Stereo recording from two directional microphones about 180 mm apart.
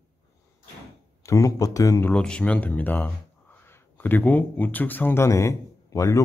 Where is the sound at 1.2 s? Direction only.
20° left (ahead or behind).